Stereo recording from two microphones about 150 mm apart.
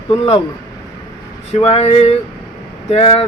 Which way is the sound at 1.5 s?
40° left (ahead or behind).